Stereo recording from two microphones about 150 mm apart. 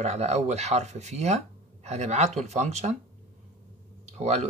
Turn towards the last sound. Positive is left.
turn(degrees=-50)  # may be behind; listen again after turning